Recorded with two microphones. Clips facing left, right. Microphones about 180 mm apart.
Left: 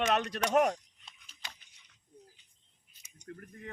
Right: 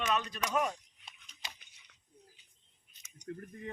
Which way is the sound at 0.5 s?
60° left (ahead or behind).